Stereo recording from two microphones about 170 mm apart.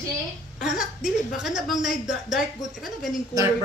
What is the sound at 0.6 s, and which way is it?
A woman's voice, 5° right (ahead or behind).